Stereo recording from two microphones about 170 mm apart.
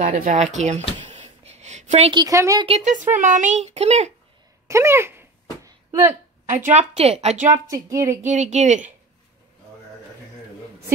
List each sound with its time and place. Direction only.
0.0 s speech: 45° right (ahead or behind)
0.9 s a sound: 30° right (ahead or behind)
1.2 s a sound: 40° right (ahead or behind)
2.1 s speech: 20° right (ahead or behind)
2.6 s a child's voice: 40° right (ahead or behind)
4.6 s a sound: 15° right (ahead or behind)
6.6 s a child's voice: 40° right (ahead or behind)
7.4 s speech: 20° right (ahead or behind)
8.2 s speech: 45° right (ahead or behind)